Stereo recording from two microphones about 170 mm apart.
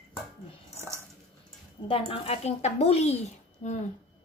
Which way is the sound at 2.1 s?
35° left (ahead or behind).